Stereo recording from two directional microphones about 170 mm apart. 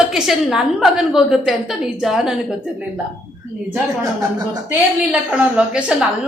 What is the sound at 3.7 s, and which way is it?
Speech, 15° right (ahead or behind).